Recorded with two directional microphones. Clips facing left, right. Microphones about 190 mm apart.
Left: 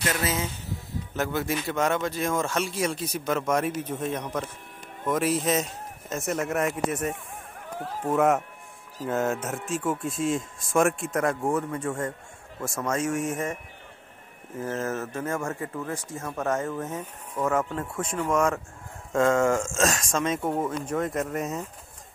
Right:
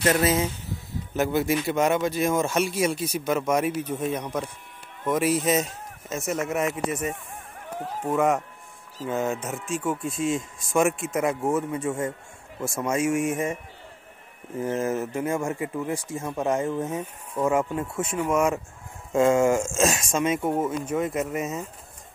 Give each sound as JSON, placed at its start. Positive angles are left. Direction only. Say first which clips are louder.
{"t": 0.1, "sound": "speech", "louder": "right 8 dB", "side_deg": -30}
{"t": 1.1, "sound": "speech", "louder": "right 5 dB", "side_deg": -10}
{"t": 14.8, "sound": "speech", "louder": "right 4 dB", "side_deg": -15}